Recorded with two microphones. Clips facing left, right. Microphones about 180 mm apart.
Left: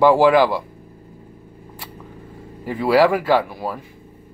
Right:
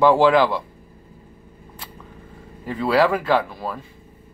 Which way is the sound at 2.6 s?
15° left (ahead or behind).